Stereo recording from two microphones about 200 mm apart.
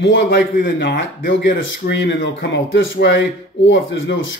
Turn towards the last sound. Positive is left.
turn(degrees=70)  # may be behind; listen again after turning